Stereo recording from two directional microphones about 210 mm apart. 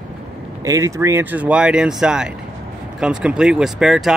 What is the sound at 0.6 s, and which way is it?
Speech, 15° right (ahead or behind).